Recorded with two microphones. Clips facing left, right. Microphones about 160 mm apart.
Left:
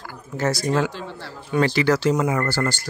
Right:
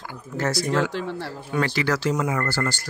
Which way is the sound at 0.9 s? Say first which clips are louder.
Right 5 dB; 70° right (ahead or behind).